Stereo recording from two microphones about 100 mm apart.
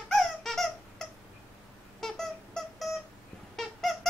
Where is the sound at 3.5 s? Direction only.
Centre (ahead or behind).